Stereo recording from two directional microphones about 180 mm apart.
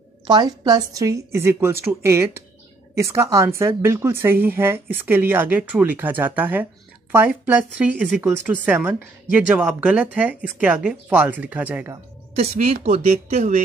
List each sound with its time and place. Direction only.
0.3 s a woman's voice: 25° right (ahead or behind)
12.4 s speech: 35° right (ahead or behind)